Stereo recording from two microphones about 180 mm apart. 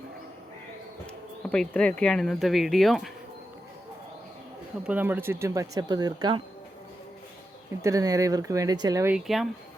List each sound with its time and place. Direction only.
1.5 s speech: 5° left (ahead or behind)
4.9 s speech: 10° right (ahead or behind)
7.8 s speech: 15° right (ahead or behind)
9.1 s speech: centre (ahead or behind)